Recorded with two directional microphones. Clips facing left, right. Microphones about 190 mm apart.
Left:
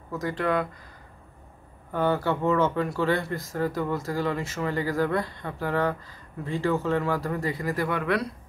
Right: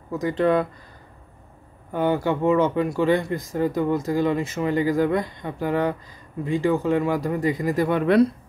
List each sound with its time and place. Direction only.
0.1 s speech: 20° right (ahead or behind)
1.9 s speech: 15° right (ahead or behind)